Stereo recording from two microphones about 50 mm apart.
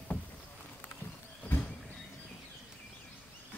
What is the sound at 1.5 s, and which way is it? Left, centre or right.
Vehicle, left.